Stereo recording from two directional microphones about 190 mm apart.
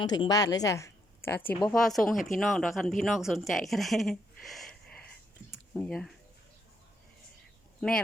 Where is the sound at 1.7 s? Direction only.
Centre (ahead or behind).